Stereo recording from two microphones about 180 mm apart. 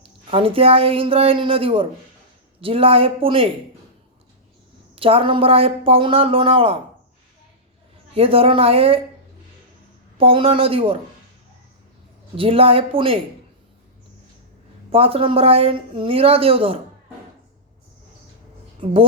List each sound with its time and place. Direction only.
0.0 s speech: 30° right (ahead or behind)
4.9 s speech: 30° right (ahead or behind)
8.1 s speech: 30° right (ahead or behind)
10.2 s speech: 30° right (ahead or behind)
12.4 s speech: 30° right (ahead or behind)
14.8 s speech: 30° right (ahead or behind)